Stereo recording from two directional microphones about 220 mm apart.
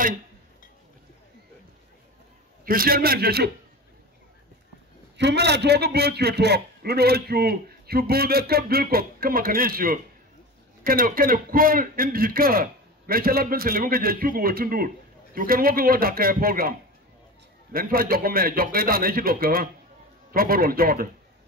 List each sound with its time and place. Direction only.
2.6 s a man's voice: 40° right (ahead or behind)
5.1 s a man's voice: 50° right (ahead or behind)
17.7 s a man's voice: 40° right (ahead or behind)